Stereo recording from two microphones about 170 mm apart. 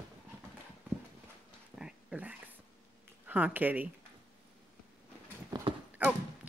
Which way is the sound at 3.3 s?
10° right (ahead or behind).